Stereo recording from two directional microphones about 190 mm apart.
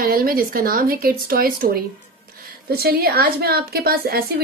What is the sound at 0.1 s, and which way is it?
A woman's voice, 50° right (ahead or behind).